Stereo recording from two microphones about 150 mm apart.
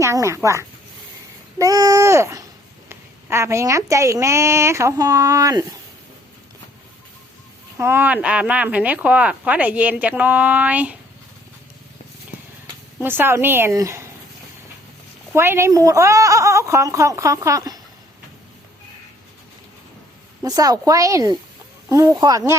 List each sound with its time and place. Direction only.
0.0 s a woman's voice: 20° right (ahead or behind)
7.8 s speech: 15° right (ahead or behind)
13.0 s speech: 15° right (ahead or behind)
15.3 s a woman's voice: 15° right (ahead or behind)
20.4 s a woman's voice: 25° right (ahead or behind)